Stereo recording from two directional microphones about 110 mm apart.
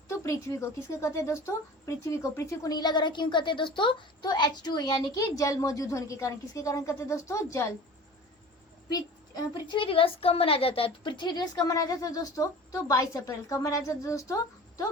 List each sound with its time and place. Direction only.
0.1 s a woman's voice: 25° left (ahead or behind)
8.9 s a woman's voice: 35° left (ahead or behind)